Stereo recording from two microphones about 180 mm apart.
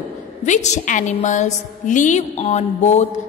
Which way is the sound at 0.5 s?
40° left (ahead or behind).